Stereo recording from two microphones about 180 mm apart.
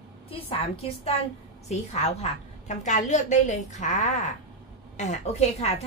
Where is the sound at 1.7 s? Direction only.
40° left (ahead or behind).